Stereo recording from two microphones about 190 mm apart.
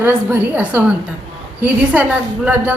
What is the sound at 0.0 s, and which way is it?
A woman's voice, 10° right (ahead or behind).